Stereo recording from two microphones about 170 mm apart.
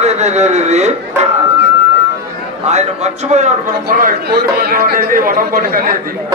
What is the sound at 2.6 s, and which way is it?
Speech, 40° right (ahead or behind).